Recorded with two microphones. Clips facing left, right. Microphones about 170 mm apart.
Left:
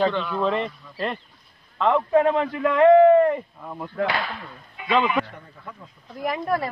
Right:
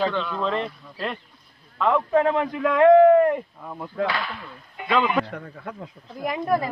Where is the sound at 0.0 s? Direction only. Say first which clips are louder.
Left 2 dB; 10° left (ahead or behind).